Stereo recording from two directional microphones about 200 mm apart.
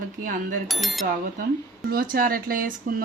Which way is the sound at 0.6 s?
Centre (ahead or behind).